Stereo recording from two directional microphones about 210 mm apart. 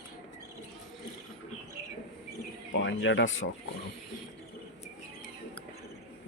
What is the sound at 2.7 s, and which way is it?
Speech, 60° left (ahead or behind).